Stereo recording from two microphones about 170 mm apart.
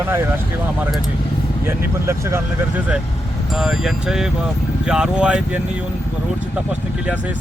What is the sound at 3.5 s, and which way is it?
Speech, centre (ahead or behind).